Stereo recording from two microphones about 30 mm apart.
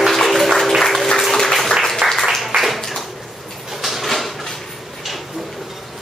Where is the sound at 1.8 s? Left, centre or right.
Centre.